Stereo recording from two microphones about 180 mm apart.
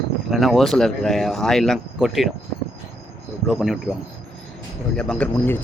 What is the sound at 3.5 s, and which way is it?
Speech, centre (ahead or behind).